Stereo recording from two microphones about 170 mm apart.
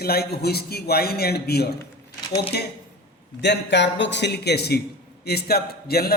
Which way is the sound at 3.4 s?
85° left.